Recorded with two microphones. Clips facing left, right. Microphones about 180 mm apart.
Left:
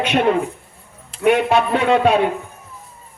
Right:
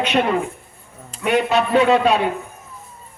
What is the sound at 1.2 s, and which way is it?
Speech, 60° left (ahead or behind).